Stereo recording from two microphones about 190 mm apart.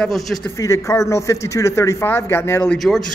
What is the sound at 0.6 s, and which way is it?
A man's voice, 15° left (ahead or behind).